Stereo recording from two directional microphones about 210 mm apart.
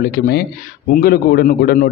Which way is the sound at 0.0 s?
50° left (ahead or behind).